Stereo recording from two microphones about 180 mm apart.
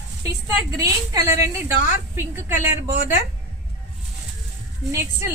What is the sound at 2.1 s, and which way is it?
Speech, 15° right (ahead or behind).